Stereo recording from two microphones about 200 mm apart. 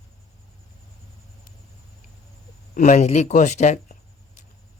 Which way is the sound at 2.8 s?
35° left (ahead or behind).